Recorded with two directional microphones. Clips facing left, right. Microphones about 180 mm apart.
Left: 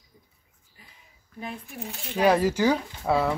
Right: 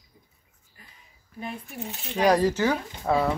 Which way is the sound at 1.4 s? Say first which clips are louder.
Right 1 dB; centre (ahead or behind).